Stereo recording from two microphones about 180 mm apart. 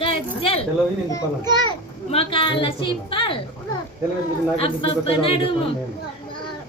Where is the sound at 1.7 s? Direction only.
30° left (ahead or behind).